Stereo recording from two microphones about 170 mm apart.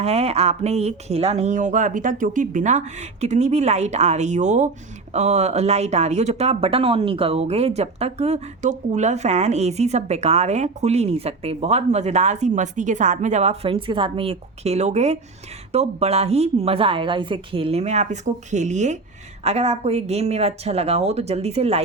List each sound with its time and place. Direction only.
0.0 s speech: 40° right (ahead or behind)